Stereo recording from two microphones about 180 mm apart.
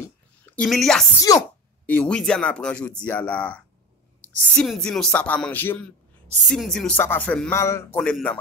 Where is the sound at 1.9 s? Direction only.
5° left (ahead or behind).